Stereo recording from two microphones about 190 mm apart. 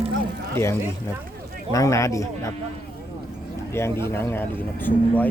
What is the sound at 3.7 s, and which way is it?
A man's voice, 15° left (ahead or behind).